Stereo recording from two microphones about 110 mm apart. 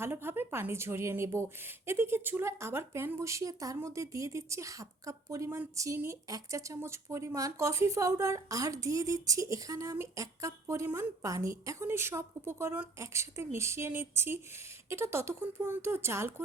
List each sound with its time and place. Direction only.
0.0 s speech: 20° right (ahead or behind)
10.8 s a woman's voice: 15° right (ahead or behind)
11.2 s speech: 30° right (ahead or behind)